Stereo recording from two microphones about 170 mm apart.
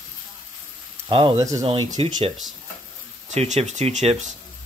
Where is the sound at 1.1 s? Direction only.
30° right (ahead or behind).